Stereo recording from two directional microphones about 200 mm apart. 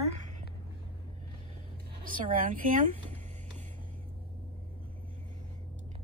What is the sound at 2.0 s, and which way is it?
Speech, 45° right (ahead or behind).